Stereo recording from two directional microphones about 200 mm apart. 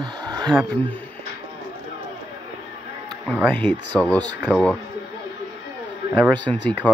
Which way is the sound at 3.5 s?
5° left (ahead or behind).